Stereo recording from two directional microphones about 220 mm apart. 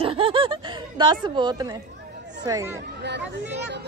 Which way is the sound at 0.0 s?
25° right (ahead or behind).